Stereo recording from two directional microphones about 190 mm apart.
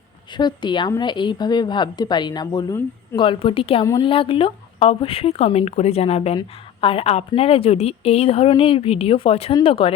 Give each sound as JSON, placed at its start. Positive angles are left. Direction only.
{"t": 0.3, "sound": "a woman's voice", "side_deg": 25}
{"t": 3.2, "sound": "a woman's voice", "side_deg": 30}
{"t": 3.8, "sound": "a woman's voice", "side_deg": 15}
{"t": 4.1, "sound": "a woman's voice", "side_deg": 30}